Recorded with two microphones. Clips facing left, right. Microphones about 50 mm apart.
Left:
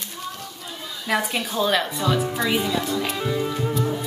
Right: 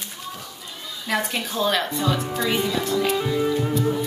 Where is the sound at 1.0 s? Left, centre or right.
Centre.